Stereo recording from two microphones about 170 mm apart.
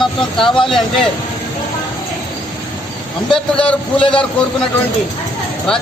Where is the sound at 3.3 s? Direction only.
5° left (ahead or behind).